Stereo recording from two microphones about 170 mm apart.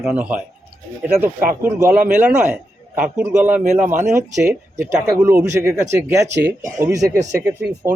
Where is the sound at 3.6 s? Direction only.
50° right (ahead or behind).